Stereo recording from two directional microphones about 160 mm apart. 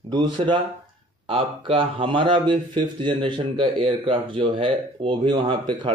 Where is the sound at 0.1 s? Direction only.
30° right (ahead or behind).